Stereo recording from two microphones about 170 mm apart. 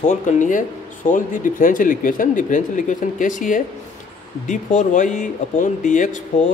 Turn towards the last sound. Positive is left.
turn(degrees=50)  # may be behind; listen again after turning